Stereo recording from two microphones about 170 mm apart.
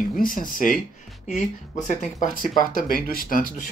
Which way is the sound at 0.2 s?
55° left (ahead or behind).